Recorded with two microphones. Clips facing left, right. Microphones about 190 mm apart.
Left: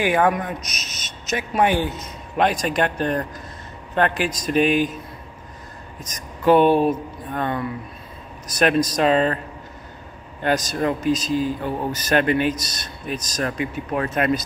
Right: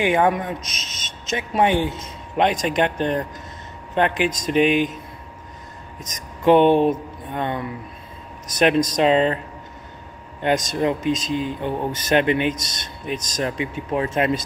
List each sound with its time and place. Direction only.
0.0 s speech: 25° right (ahead or behind)
6.0 s speech: 20° right (ahead or behind)
10.4 s speech: 25° right (ahead or behind)